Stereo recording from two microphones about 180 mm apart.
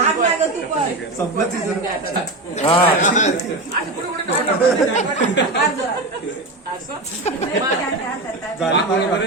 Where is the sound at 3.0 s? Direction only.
40° left (ahead or behind).